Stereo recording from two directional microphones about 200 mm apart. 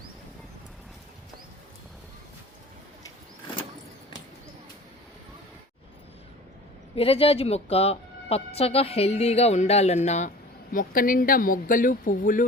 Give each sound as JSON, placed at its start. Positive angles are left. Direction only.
{"t": 6.9, "sound": "a woman's voice", "side_deg": 30}